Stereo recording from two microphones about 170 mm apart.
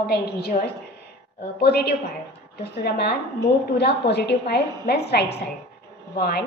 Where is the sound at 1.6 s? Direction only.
70° left (ahead or behind).